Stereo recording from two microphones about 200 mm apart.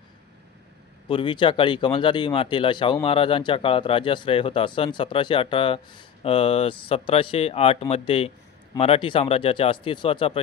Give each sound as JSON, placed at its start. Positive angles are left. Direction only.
{"t": 1.0, "sound": "speech", "side_deg": 25}